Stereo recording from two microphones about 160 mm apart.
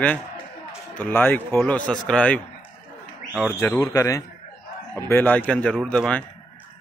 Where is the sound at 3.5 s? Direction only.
10° left (ahead or behind).